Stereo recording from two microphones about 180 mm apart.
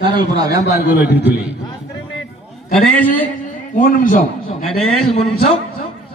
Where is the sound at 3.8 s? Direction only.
45° left (ahead or behind).